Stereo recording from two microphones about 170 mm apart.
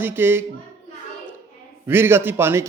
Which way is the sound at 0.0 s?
10° right (ahead or behind).